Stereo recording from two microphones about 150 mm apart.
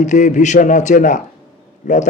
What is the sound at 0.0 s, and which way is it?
A man's voice, 50° left (ahead or behind).